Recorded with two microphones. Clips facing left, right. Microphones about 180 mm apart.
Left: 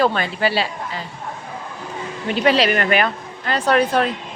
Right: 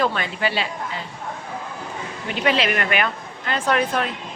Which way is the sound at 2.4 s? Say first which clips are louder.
Left 4 dB; 35° left (ahead or behind).